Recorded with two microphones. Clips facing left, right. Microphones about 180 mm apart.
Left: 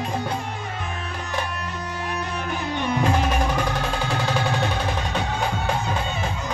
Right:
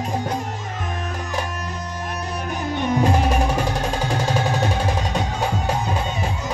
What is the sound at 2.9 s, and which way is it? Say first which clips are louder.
Music: right 3 dB; 35° right (ahead or behind).